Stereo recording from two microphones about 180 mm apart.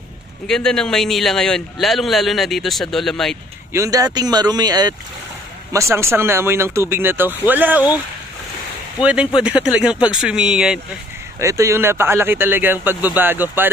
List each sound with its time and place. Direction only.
0.5 s a man's voice: 5° left (ahead or behind)
3.7 s speech: 20° right (ahead or behind)
9.0 s a man's voice: 5° right (ahead or behind)
11.3 s speech: 15° right (ahead or behind)